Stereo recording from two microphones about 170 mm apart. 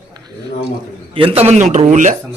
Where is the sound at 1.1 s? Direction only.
35° right (ahead or behind).